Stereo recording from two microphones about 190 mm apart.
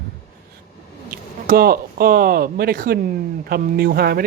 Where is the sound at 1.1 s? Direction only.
50° right (ahead or behind).